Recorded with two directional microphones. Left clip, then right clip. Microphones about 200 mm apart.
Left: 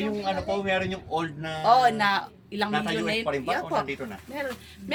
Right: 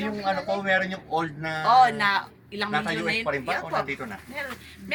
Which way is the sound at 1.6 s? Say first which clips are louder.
Right 1 dB; 55° left (ahead or behind).